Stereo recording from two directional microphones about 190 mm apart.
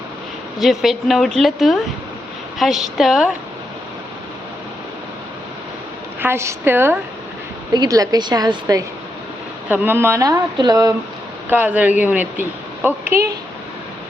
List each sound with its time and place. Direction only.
0.6 s a woman's voice: centre (ahead or behind)
6.1 s a woman's voice: 10° right (ahead or behind)
11.4 s a woman's voice: 10° right (ahead or behind)